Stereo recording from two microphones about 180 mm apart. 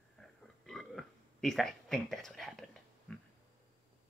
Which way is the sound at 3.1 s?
5° left (ahead or behind).